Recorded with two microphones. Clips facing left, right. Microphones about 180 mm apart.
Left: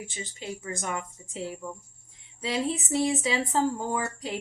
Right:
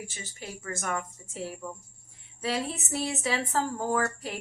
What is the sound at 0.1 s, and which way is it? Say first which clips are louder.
A woman's voice: left 5 dB; 15° left (ahead or behind).